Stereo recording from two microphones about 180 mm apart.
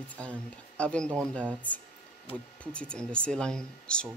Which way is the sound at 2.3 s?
30° left (ahead or behind).